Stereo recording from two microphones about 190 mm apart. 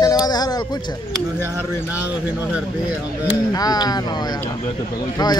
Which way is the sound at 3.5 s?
20° left (ahead or behind).